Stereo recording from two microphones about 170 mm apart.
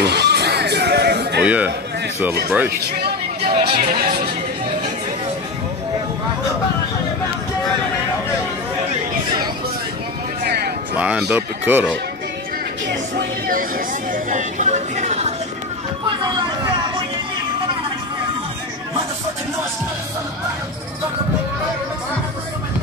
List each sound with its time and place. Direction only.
0.0 s music: 75° right (ahead or behind)
1.4 s a man's voice: 10° right (ahead or behind)
3.4 s speech: 35° right (ahead or behind)
10.4 s music: 70° right (ahead or behind)
11.0 s speech: 5° right (ahead or behind)
13.5 s a sound: 55° right (ahead or behind)
16.0 s vehicle: 25° right (ahead or behind)